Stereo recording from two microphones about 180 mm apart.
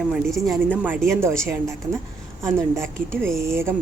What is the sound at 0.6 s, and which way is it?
Speech, 10° right (ahead or behind).